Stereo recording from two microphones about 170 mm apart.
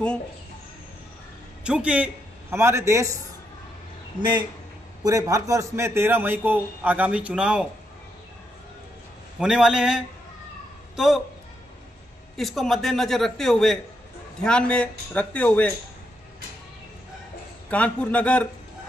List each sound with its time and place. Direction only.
1.6 s a man's voice: 5° right (ahead or behind)
4.2 s a man's voice: 25° right (ahead or behind); by 7.6 s 5° right (ahead or behind)
9.4 s a man's voice: 5° right (ahead or behind)
12.4 s a man's voice: centre (ahead or behind)
17.6 s speech: 10° left (ahead or behind)